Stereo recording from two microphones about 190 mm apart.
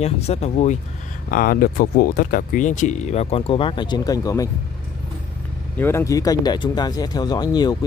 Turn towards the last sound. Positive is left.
turn(degrees=20)  # may be behind; listen again after turning